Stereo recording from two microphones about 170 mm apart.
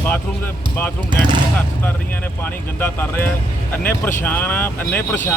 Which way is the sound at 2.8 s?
10° left (ahead or behind).